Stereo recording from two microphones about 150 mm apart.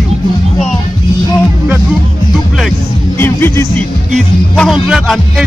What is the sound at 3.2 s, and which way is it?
Music, 15° left (ahead or behind).